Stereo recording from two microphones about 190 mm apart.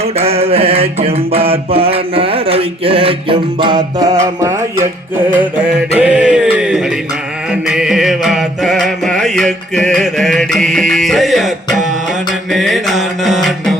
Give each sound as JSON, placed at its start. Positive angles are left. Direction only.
{"t": 0.0, "sound": "mantra", "side_deg": -30}
{"t": 5.9, "sound": "a sound", "side_deg": -5}
{"t": 7.5, "sound": "mantra", "side_deg": -5}
{"t": 9.8, "sound": "music", "side_deg": 5}